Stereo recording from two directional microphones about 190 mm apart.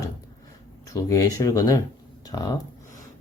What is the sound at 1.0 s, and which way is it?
Speech, 15° left (ahead or behind).